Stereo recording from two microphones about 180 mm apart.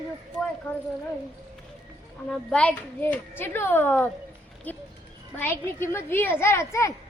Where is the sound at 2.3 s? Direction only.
5° left (ahead or behind).